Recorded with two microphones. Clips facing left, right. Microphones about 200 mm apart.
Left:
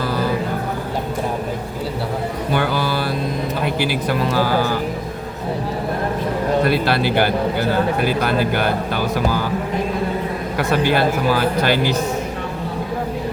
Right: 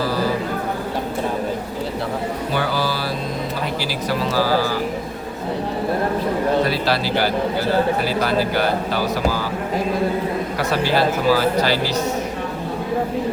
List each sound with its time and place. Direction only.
2.5 s music: 55° left (ahead or behind)
3.8 s speech: 55° left (ahead or behind)
6.7 s speech: 55° left (ahead or behind)
10.6 s speech: 55° left (ahead or behind)